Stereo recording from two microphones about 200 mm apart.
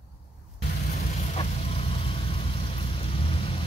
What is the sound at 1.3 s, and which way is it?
Vehicle, 30° left (ahead or behind).